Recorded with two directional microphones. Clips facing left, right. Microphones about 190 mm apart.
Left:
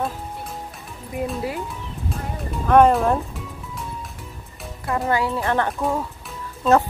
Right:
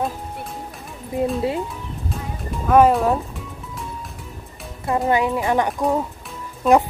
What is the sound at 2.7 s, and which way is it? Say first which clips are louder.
Speech: even; 5° right (ahead or behind).